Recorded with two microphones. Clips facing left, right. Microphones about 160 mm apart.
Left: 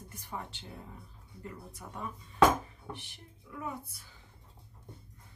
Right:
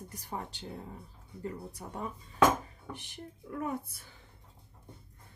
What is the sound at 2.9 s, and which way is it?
Speech, 45° right (ahead or behind).